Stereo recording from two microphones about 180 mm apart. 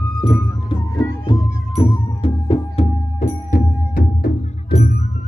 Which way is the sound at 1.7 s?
30° left (ahead or behind).